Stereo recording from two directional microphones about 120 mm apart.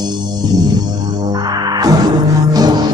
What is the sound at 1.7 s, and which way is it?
Music, 30° right (ahead or behind).